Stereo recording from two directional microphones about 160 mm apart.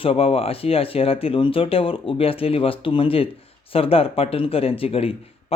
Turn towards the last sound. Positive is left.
turn(degrees=35)  # may be behind; listen again after turning